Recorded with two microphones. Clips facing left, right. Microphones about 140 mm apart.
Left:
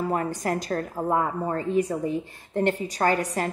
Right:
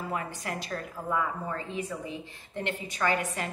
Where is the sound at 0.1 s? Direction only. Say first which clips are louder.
Left 8 dB; 45° left (ahead or behind).